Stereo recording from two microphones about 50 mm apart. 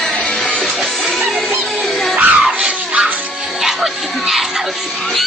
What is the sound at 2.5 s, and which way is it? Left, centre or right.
Music, right.